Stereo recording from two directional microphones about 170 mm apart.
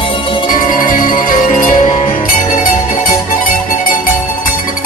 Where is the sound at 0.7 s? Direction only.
50° left (ahead or behind).